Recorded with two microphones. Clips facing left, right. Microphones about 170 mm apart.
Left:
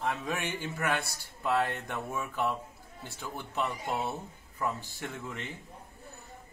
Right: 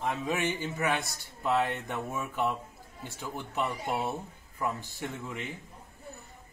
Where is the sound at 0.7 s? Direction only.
15° right (ahead or behind).